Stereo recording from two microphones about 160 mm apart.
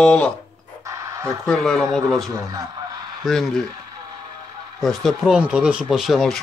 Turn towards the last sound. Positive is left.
turn(degrees=0)  # may be behind; listen again after turning